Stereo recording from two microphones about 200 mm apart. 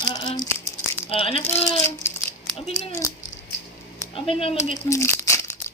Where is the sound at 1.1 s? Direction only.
30° left (ahead or behind).